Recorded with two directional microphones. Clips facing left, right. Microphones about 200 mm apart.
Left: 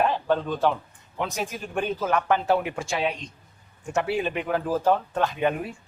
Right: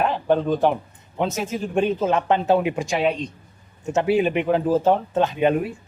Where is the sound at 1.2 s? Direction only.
25° right (ahead or behind).